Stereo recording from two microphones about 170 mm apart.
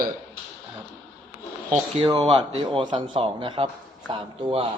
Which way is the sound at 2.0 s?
30° right (ahead or behind).